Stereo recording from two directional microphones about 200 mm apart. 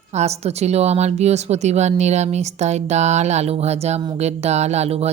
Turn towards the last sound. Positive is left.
turn(degrees=-30)  # may be behind; listen again after turning